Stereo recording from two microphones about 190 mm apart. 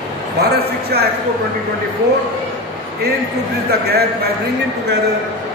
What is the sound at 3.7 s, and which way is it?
Speech, 60° right (ahead or behind).